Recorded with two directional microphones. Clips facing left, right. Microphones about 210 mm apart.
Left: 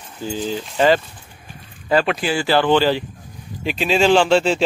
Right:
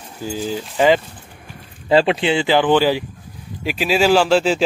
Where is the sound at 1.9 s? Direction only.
25° right (ahead or behind); by 4.6 s 5° right (ahead or behind).